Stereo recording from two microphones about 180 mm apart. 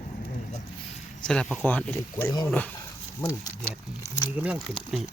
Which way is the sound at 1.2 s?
5° left (ahead or behind).